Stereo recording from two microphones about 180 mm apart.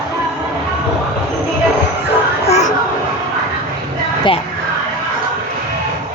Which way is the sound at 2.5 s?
40° left (ahead or behind).